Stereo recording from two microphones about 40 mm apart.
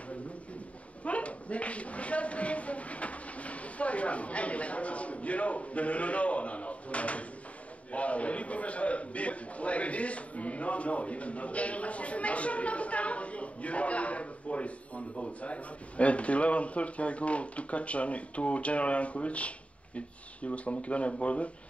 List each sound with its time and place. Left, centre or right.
1.0 s a man's voice: left